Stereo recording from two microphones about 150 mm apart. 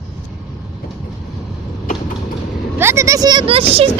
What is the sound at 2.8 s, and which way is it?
Speech, 20° right (ahead or behind).